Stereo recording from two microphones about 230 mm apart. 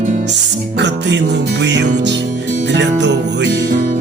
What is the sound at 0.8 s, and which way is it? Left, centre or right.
Music, right.